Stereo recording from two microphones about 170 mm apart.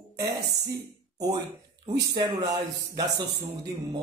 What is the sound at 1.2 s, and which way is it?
A man's voice, 20° right (ahead or behind).